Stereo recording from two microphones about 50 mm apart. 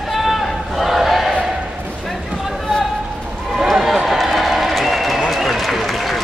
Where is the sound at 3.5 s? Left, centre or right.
Centre.